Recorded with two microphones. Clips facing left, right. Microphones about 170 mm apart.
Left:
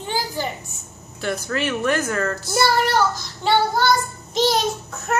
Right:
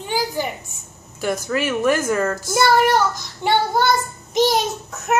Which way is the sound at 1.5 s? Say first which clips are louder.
Right 3 dB; 10° right (ahead or behind).